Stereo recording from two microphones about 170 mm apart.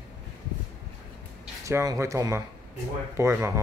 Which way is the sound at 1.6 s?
20° right (ahead or behind).